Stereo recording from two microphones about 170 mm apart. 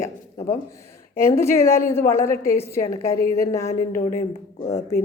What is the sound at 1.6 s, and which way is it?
A woman's voice, 15° left (ahead or behind).